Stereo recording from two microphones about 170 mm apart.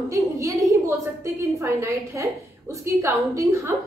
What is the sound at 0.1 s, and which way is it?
A woman's voice, 15° right (ahead or behind).